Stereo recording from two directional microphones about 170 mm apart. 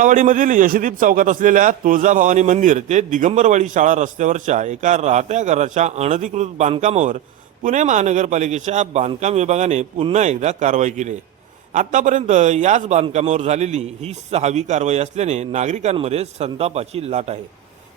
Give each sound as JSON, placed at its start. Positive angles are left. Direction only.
{"t": 0.0, "sound": "a man's voice", "side_deg": -50}